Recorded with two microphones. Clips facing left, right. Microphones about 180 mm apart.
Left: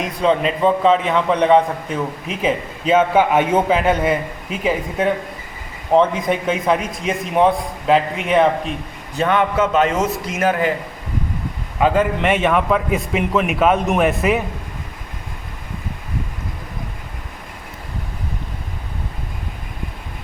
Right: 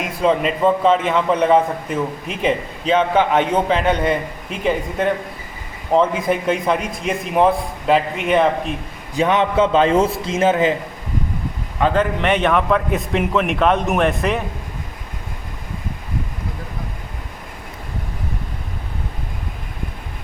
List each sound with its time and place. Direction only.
0.0 s a man's voice: 5° right (ahead or behind)
9.1 s a man's voice: 20° right (ahead or behind)
11.8 s a man's voice: 5° left (ahead or behind)